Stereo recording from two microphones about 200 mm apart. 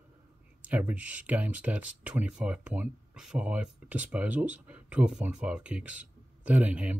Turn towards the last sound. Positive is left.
turn(degrees=-5)  # may be behind; listen again after turning